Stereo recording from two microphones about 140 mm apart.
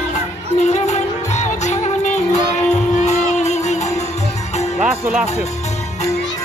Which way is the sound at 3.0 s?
55° left (ahead or behind).